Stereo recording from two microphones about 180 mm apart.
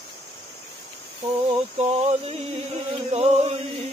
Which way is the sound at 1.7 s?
35° right (ahead or behind).